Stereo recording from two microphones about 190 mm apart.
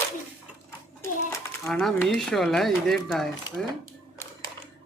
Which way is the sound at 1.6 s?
Centre (ahead or behind).